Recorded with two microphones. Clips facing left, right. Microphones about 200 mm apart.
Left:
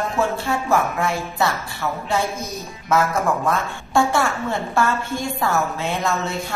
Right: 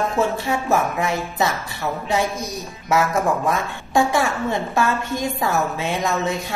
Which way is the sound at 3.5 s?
15° right (ahead or behind).